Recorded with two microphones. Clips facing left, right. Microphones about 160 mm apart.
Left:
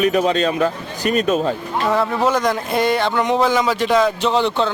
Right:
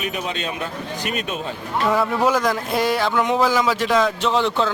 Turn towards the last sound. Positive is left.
turn(degrees=0)  # may be behind; listen again after turning